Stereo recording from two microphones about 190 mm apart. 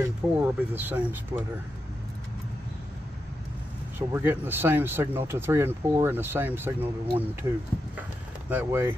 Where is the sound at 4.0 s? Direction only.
10° right (ahead or behind).